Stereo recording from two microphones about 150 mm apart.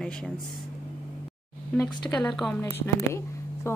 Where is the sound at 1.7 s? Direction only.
10° left (ahead or behind).